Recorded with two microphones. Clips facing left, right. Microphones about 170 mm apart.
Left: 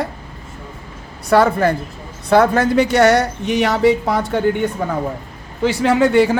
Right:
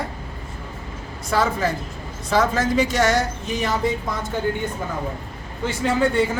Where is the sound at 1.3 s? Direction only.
60° left (ahead or behind).